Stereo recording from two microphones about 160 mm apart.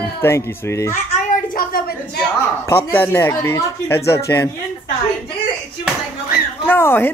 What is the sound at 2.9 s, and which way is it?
Speech, 15° left (ahead or behind).